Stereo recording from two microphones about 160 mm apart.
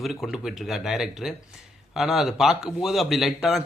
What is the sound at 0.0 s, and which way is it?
Speech, centre (ahead or behind).